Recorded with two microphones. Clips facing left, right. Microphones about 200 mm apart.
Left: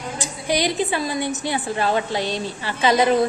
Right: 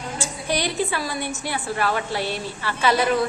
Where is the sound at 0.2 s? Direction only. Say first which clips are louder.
Left 3 dB; 15° left (ahead or behind).